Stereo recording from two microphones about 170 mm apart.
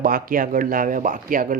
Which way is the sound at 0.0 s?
55° right (ahead or behind).